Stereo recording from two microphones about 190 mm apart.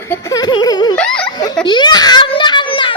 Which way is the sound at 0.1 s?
20° left (ahead or behind).